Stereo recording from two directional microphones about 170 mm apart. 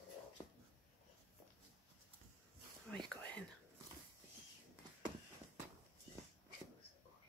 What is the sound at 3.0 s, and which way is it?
Whispering, 5° left (ahead or behind).